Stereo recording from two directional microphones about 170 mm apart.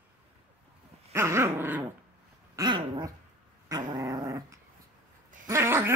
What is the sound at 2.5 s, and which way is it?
Dog, 25° right (ahead or behind).